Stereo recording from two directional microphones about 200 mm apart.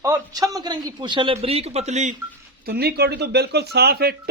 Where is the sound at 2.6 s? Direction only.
55° right (ahead or behind).